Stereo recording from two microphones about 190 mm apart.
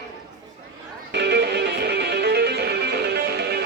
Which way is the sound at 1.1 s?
60° right (ahead or behind).